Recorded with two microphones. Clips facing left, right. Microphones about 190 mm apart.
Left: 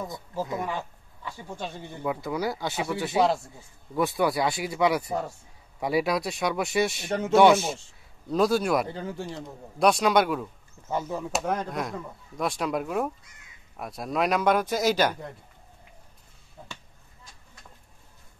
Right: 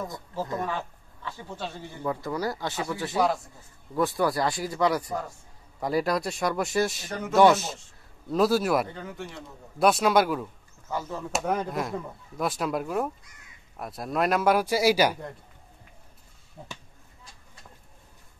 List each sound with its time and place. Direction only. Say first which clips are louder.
0.1 s speech: left 1 dB; 10° left (ahead or behind)
2.2 s speech: left 1 dB; centre (ahead or behind)
7.1 s speech: left 2 dB; 25° left (ahead or behind)
8.3 s speech: even; centre (ahead or behind)
8.8 s speech: left 4 dB; 30° left (ahead or behind)
9.8 s speech: even; 5° right (ahead or behind)
10.9 s speech: left 3 dB; 20° left (ahead or behind)
11.3 s speech: right 2 dB; 5° right (ahead or behind)
16.6 s speech: right 1 dB; 10° right (ahead or behind)